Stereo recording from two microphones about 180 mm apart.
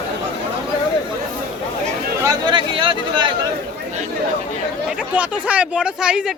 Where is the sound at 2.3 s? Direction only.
25° right (ahead or behind).